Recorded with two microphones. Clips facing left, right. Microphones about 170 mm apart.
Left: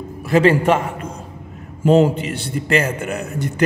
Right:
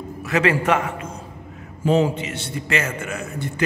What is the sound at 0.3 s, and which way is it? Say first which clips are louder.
Speech: left 5 dB; 30° left (ahead or behind).